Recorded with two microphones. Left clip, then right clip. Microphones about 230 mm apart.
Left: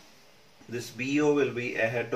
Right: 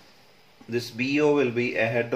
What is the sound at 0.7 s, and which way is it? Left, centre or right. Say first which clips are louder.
Speech: right 4 dB; right.